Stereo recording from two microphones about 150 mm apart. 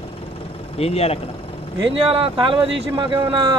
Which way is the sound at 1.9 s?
40° right (ahead or behind).